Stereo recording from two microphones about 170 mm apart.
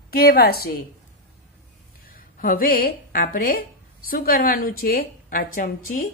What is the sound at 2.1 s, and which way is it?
Speech, 55° left (ahead or behind).